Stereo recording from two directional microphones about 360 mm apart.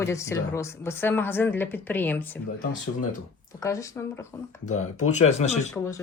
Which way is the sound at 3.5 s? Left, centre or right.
Centre.